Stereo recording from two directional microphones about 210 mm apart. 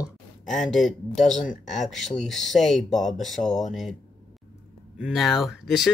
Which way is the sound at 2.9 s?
35° left (ahead or behind).